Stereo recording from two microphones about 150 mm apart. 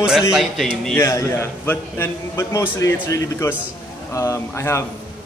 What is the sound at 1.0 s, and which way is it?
A man's voice, 20° left (ahead or behind).